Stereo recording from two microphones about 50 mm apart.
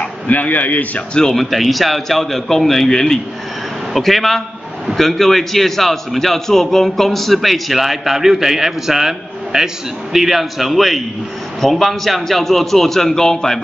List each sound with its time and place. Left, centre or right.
0.3 s a man's voice: left
1.3 s a man's voice: centre